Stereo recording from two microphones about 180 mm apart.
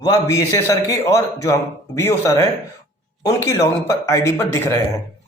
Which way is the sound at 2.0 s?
15° left (ahead or behind).